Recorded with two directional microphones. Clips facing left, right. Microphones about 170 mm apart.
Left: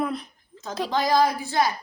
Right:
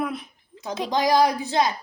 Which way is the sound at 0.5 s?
15° right (ahead or behind).